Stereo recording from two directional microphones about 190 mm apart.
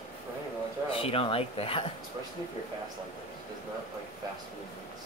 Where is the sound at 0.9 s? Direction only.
30° left (ahead or behind).